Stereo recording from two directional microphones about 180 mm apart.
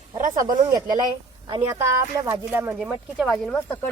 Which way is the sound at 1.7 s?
15° right (ahead or behind).